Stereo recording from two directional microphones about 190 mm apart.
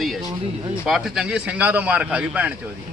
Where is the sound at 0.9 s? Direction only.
Centre (ahead or behind).